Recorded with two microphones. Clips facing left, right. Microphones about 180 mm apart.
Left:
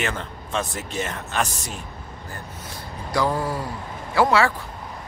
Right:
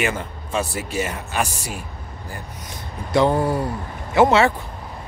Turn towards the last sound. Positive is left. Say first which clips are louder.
# right 4 dB
turn(degrees=-25)  # may be behind; listen again after turning